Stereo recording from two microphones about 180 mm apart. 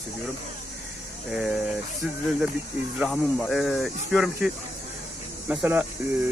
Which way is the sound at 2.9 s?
Centre (ahead or behind).